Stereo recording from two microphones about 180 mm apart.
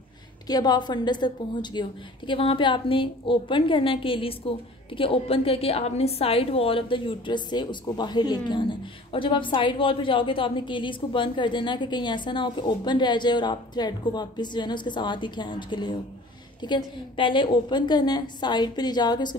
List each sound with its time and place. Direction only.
0.5 s a woman's voice: 20° left (ahead or behind)